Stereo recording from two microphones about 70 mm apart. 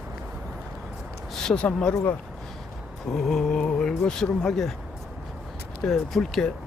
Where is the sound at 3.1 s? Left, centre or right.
Centre.